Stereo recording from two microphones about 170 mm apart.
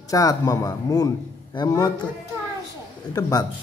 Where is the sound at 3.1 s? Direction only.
20° left (ahead or behind).